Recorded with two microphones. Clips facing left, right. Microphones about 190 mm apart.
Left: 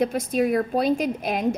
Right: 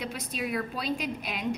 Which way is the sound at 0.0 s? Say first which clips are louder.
Left 12 dB; 50° left (ahead or behind).